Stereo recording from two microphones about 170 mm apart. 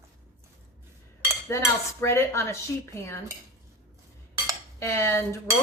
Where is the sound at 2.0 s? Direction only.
15° left (ahead or behind).